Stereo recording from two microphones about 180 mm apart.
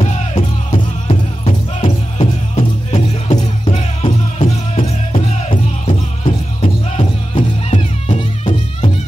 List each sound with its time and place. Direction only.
0.0 s music: 35° left (ahead or behind)
1.8 s music: 40° left (ahead or behind)
8.2 s music: 30° left (ahead or behind)